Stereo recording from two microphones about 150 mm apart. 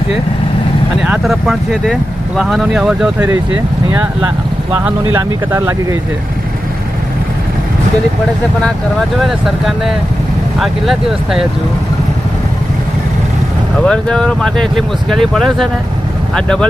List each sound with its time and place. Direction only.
1.2 s speech: centre (ahead or behind); by 5.9 s 20° right (ahead or behind)
9.2 s speech: centre (ahead or behind)
13.7 s speech: 5° left (ahead or behind)